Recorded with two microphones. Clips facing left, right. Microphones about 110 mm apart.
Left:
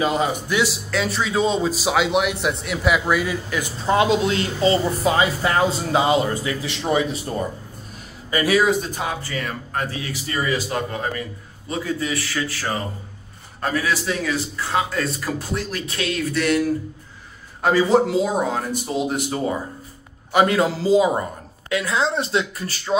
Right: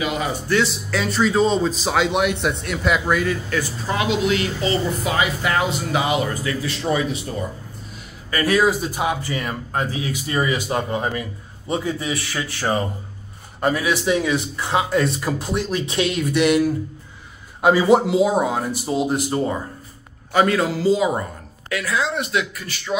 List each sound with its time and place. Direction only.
0.0 s a man's voice: 30° left (ahead or behind)
0.3 s a man's voice: 15° left (ahead or behind)
0.8 s a man's voice: centre (ahead or behind); by 3.9 s 15° left (ahead or behind)
3.9 s speech: 30° left (ahead or behind)
7.1 s speech: 40° left (ahead or behind)
8.5 s a man's voice: centre (ahead or behind)
8.9 s a man's voice: 15° right (ahead or behind); by 19.5 s centre (ahead or behind)
20.3 s speech: 20° left (ahead or behind)